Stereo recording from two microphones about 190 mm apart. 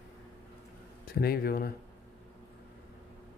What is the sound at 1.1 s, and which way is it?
Speech, 55° left (ahead or behind).